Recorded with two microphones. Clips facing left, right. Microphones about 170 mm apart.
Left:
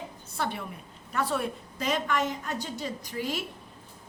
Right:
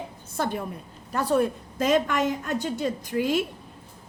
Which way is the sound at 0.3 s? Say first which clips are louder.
Right 5 dB; 45° right (ahead or behind).